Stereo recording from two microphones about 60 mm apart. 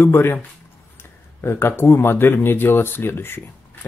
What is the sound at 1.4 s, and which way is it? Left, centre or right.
Speech, left.